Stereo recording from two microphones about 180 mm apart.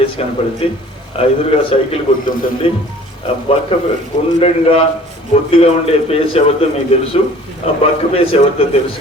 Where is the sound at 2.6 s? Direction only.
30° left (ahead or behind).